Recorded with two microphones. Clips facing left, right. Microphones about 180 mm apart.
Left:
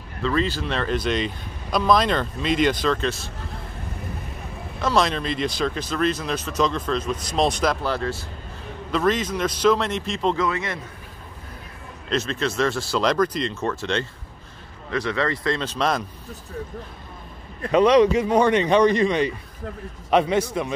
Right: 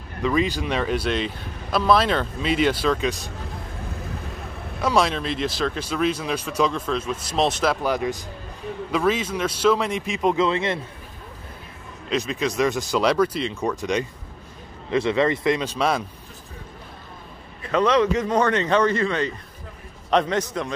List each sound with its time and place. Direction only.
0.2 s speech: 10° right (ahead or behind)
4.8 s speech: 10° right (ahead or behind)
10.4 s speech: 25° right (ahead or behind)
12.1 s speech: 10° right (ahead or behind)
17.6 s speech: 15° left (ahead or behind)